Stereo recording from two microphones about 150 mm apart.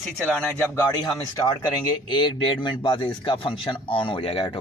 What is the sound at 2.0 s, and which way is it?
A man's voice, 35° left (ahead or behind).